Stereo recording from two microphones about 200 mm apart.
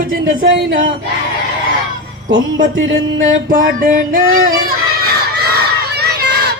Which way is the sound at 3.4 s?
45° right (ahead or behind).